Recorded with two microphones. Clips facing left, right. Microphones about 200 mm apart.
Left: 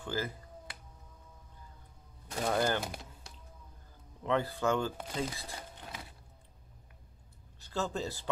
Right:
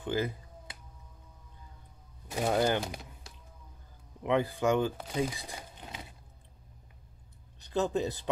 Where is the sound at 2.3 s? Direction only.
10° right (ahead or behind).